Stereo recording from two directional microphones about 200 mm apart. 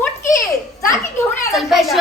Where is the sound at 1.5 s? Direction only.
Centre (ahead or behind).